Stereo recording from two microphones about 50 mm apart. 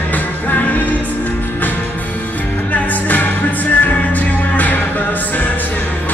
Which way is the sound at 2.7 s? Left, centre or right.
Left.